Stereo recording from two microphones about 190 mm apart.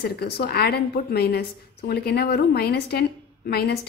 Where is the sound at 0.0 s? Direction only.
55° left (ahead or behind).